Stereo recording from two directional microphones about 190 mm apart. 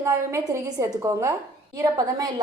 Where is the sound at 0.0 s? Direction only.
15° right (ahead or behind).